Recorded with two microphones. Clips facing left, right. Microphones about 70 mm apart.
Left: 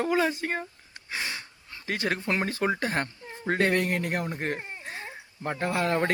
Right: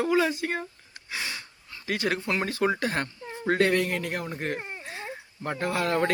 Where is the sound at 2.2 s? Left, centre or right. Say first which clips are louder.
Even; left.